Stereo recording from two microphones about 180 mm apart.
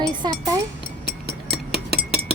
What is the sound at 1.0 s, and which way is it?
Music, 65° right (ahead or behind).